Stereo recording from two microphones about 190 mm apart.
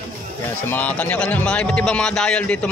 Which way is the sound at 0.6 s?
10° left (ahead or behind).